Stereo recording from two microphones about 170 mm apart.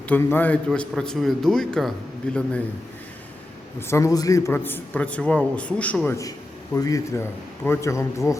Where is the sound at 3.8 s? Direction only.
15° left (ahead or behind).